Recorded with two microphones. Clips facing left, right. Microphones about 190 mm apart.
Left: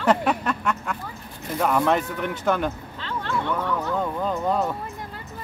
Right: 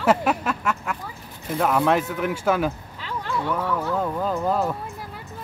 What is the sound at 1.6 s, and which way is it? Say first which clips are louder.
Speech: right 1 dB; centre (ahead or behind).